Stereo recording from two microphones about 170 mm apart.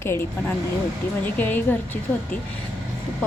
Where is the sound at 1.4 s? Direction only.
10° left (ahead or behind).